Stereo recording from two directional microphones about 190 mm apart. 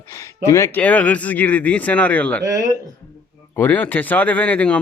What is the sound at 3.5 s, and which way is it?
Speech, 10° left (ahead or behind).